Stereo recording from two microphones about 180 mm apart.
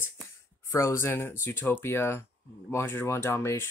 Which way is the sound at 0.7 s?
15° left (ahead or behind).